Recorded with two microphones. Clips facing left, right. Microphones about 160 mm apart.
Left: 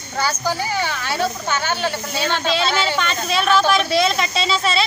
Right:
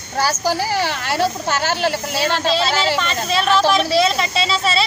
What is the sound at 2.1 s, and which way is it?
Speech, 30° right (ahead or behind).